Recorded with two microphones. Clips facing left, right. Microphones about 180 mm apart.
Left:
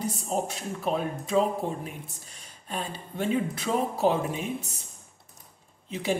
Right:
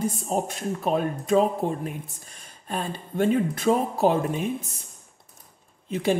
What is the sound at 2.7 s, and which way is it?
Speech, 50° right (ahead or behind).